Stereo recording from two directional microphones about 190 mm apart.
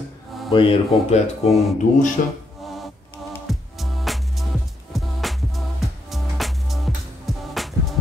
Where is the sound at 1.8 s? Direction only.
40° left (ahead or behind).